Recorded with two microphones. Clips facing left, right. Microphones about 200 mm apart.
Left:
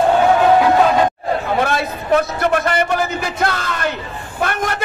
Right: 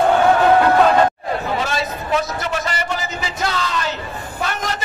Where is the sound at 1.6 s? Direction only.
55° left (ahead or behind).